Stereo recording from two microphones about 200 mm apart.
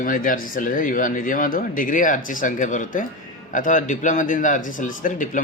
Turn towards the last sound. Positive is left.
turn(degrees=40)  # may be behind; listen again after turning